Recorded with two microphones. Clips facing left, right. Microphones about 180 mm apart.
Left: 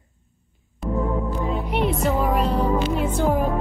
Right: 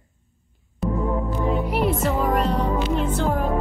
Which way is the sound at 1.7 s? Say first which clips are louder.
Even; centre (ahead or behind).